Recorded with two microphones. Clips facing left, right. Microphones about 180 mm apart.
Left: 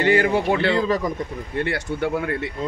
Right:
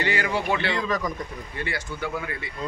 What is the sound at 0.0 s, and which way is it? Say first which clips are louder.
Speech: left 8 dB; 50° left (ahead or behind).